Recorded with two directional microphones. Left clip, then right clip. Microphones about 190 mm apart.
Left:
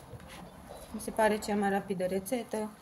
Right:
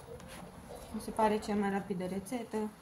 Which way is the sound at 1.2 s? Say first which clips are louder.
Left 3 dB; 45° left (ahead or behind).